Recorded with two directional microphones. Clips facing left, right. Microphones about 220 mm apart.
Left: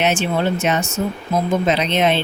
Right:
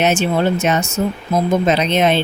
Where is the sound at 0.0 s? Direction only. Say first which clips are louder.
Right 3 dB; 40° right (ahead or behind).